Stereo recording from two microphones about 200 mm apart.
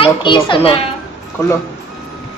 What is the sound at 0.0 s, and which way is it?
Speech, 25° left (ahead or behind).